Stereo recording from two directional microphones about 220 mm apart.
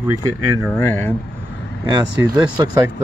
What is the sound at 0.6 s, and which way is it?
Speech, 5° left (ahead or behind).